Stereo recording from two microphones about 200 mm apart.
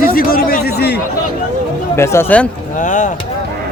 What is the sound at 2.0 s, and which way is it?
Speech, 10° left (ahead or behind).